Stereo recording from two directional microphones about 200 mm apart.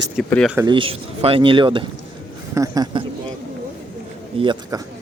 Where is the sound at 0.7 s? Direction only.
25° right (ahead or behind).